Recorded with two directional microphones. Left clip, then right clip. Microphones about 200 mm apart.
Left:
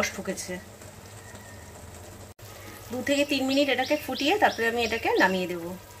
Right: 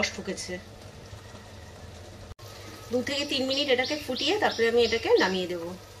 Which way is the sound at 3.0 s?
40° left (ahead or behind).